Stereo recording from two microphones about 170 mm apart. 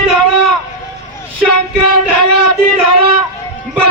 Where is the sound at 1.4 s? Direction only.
5° left (ahead or behind).